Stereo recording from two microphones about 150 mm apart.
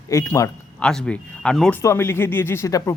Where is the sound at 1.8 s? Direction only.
15° left (ahead or behind).